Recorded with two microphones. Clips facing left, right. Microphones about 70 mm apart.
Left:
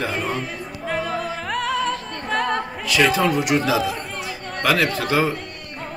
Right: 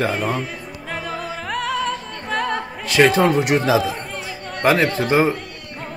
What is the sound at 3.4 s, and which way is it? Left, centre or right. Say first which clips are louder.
Speech: right 3 dB; right.